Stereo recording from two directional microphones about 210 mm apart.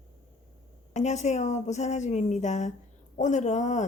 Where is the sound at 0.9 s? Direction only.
35° left (ahead or behind).